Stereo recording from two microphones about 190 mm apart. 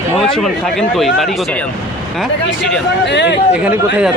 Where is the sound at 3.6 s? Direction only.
5° right (ahead or behind).